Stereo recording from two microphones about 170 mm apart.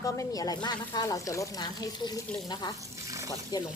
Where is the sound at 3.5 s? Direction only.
25° left (ahead or behind).